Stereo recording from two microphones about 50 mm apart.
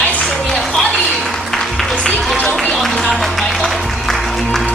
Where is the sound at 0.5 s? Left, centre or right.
Centre.